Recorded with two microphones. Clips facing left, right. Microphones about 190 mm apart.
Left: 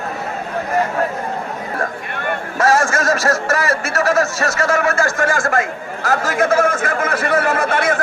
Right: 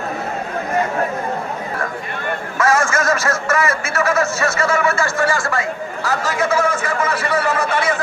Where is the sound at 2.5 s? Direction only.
35° left (ahead or behind).